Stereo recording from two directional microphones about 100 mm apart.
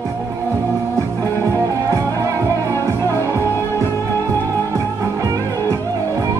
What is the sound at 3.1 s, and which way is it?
Music, 25° left (ahead or behind).